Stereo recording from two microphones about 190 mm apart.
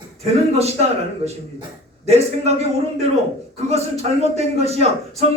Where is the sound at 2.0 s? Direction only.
35° right (ahead or behind).